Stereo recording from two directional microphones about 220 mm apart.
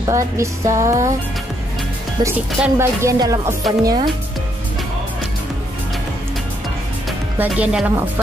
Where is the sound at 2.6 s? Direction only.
10° right (ahead or behind).